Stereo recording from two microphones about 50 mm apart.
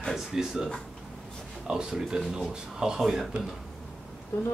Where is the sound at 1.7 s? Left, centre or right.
Centre.